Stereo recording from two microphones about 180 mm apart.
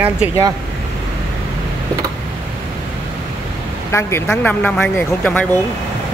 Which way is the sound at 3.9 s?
15° left (ahead or behind).